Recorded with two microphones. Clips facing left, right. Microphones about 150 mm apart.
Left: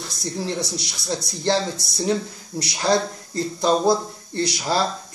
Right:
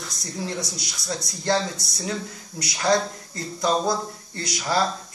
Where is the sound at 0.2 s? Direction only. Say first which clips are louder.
Left 4 dB; 30° left (ahead or behind).